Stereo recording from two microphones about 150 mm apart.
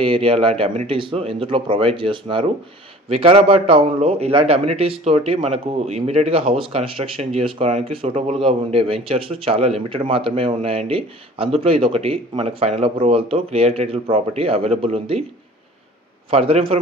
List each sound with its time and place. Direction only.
0.0 s a man's voice: 35° right (ahead or behind)
16.3 s a man's voice: 40° right (ahead or behind)